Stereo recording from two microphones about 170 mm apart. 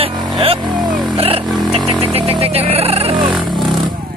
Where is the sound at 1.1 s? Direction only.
35° right (ahead or behind).